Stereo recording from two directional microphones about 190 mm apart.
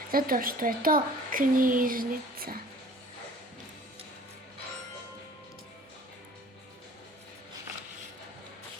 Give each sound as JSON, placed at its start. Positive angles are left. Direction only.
{"t": 0.1, "sound": "a woman's voice", "side_deg": -50}